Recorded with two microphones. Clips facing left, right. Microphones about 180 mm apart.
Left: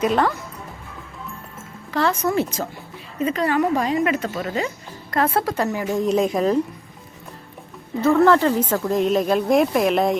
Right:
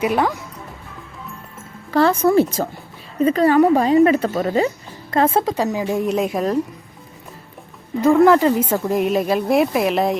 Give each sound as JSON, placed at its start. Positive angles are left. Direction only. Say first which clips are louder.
{"t": 0.0, "sound": "speech", "louder": "right 1 dB", "side_deg": -10}
{"t": 2.0, "sound": "speech", "louder": "right 6 dB", "side_deg": -35}
{"t": 5.1, "sound": "speech", "louder": "right 3 dB", "side_deg": -25}
{"t": 8.0, "sound": "speech", "louder": "right 3 dB", "side_deg": -15}